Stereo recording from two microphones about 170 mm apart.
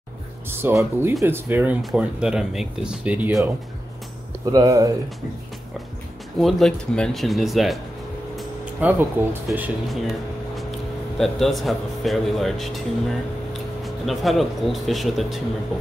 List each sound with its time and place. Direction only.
0.5 s speech: 15° right (ahead or behind)
4.5 s speech: 20° right (ahead or behind)
6.4 s speech: centre (ahead or behind)
8.8 s speech: 10° right (ahead or behind)
9.8 s a sound: centre (ahead or behind)
11.1 s speech: centre (ahead or behind)